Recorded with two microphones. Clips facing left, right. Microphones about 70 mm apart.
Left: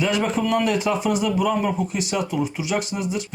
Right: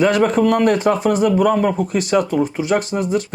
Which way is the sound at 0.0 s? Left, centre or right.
Right.